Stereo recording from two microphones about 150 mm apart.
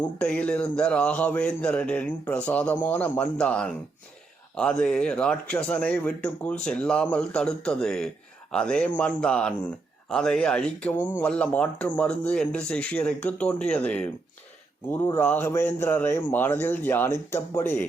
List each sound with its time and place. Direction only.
0.0 s speech: 10° left (ahead or behind)